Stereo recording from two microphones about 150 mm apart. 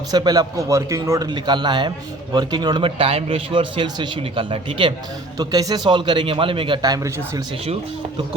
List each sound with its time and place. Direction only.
0.1 s a man's voice: 25° right (ahead or behind)
5.4 s speech: 25° right (ahead or behind)